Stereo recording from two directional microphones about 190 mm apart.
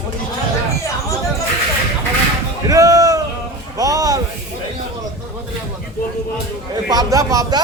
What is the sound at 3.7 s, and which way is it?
Speech, 20° right (ahead or behind).